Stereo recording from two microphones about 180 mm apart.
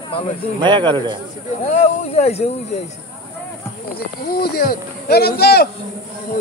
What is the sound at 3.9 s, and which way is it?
Speech, 60° left (ahead or behind).